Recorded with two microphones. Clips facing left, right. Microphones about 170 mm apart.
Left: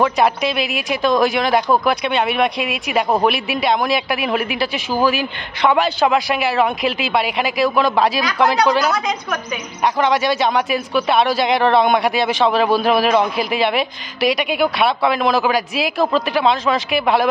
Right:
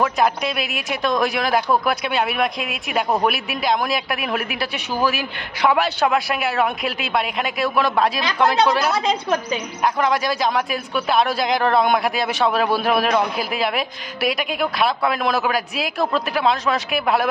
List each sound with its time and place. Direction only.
0.0 s speech: centre (ahead or behind)
8.9 s a woman's voice: 30° right (ahead or behind)
9.9 s speech: centre (ahead or behind)